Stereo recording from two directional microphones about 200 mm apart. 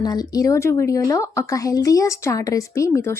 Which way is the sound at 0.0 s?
20° left (ahead or behind).